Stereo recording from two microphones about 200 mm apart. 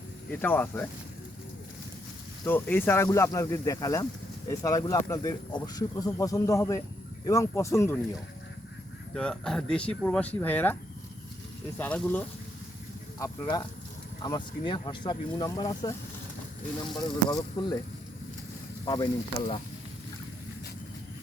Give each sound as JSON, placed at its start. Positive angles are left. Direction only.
{"t": 0.3, "sound": "speech", "side_deg": 10}
{"t": 2.4, "sound": "speech", "side_deg": 10}
{"t": 9.1, "sound": "speech", "side_deg": 5}
{"t": 11.8, "sound": "speech", "side_deg": 10}
{"t": 18.9, "sound": "speech", "side_deg": 25}